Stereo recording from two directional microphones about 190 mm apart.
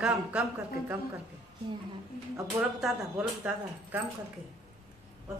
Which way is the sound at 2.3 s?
15° right (ahead or behind).